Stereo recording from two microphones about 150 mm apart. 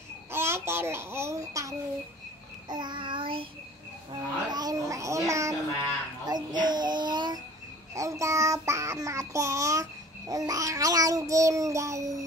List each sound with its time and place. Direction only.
0.3 s a child's voice: 15° right (ahead or behind)
2.7 s child singing: 30° right (ahead or behind)
4.1 s a child's voice: 25° right (ahead or behind)
6.2 s child singing: 30° right (ahead or behind)